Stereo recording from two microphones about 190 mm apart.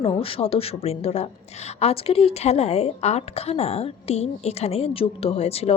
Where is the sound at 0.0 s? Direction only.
30° left (ahead or behind).